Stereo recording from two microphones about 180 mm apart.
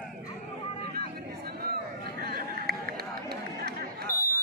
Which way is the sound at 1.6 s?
60° right (ahead or behind).